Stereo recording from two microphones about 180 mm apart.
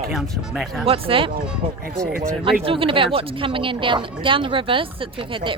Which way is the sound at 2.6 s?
30° right (ahead or behind).